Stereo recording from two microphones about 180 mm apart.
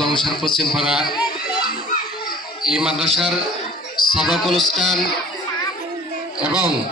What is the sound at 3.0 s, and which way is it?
Music, centre (ahead or behind).